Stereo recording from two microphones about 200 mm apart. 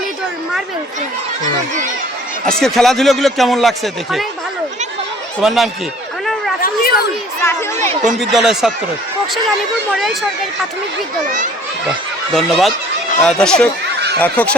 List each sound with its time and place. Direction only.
2.5 s speech: 5° left (ahead or behind)
5.4 s speech: centre (ahead or behind)
6.6 s speech: 50° left (ahead or behind)
7.4 s speech: 15° left (ahead or behind)
8.0 s speech: centre (ahead or behind)
9.9 s speech: centre (ahead or behind)
12.3 s speech: centre (ahead or behind)